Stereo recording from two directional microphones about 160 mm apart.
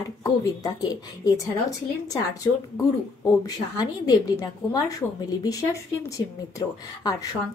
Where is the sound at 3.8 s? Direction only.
25° left (ahead or behind).